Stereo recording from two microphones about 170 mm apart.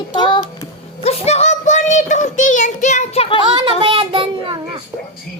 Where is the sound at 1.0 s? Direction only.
40° left (ahead or behind).